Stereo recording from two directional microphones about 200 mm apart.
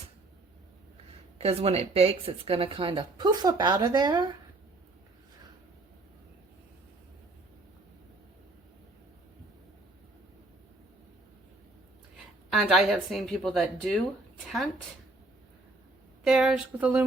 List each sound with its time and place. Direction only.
1.4 s speech: 30° right (ahead or behind)
12.5 s speech: centre (ahead or behind)
16.2 s speech: 5° right (ahead or behind)